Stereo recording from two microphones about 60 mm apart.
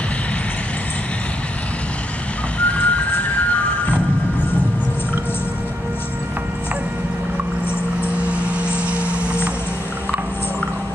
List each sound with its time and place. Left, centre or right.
2.6 s vehicle: left
8.2 s vehicle: right